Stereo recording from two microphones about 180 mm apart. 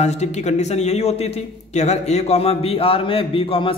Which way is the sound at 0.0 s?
40° left (ahead or behind).